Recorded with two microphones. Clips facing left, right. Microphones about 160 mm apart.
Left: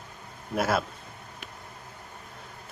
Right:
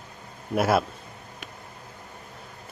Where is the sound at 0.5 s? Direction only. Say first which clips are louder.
Right 4 dB; 10° right (ahead or behind).